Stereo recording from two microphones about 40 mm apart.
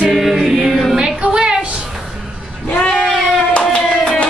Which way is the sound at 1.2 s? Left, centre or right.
Right.